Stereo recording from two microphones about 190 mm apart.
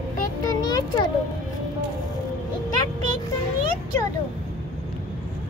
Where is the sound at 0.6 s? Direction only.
20° left (ahead or behind).